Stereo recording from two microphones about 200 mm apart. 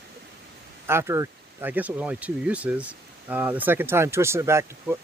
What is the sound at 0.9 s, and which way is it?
Speech, 10° right (ahead or behind).